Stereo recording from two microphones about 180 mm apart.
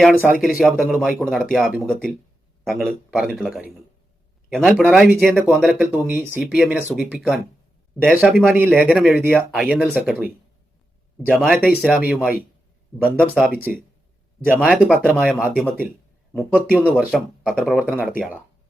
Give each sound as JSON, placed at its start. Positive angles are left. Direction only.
{"t": 0.0, "sound": "speech", "side_deg": 0}
{"t": 11.3, "sound": "speech", "side_deg": -5}
{"t": 14.4, "sound": "speech", "side_deg": -10}
{"t": 16.6, "sound": "speech", "side_deg": 5}